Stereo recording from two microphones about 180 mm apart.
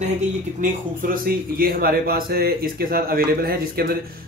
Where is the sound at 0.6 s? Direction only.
55° right (ahead or behind).